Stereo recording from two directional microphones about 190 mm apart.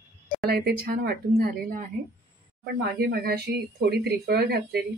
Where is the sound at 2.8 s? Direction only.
60° right (ahead or behind).